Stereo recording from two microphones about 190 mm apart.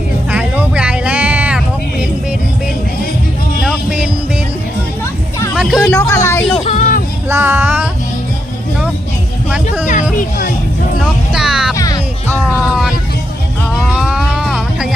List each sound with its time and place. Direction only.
0.3 s music: 5° right (ahead or behind)
5.5 s music: centre (ahead or behind)
6.0 s music: 15° left (ahead or behind)
6.7 s a sound: 45° left (ahead or behind)
7.3 s child singing: 10° right (ahead or behind)
9.8 s music: 40° left (ahead or behind)
11.3 s music: 5° right (ahead or behind)
11.7 s music: 15° left (ahead or behind)
12.5 s vehicle: centre (ahead or behind)
13.8 s music: centre (ahead or behind)